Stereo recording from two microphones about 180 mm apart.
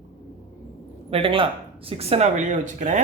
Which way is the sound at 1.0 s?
30° right (ahead or behind).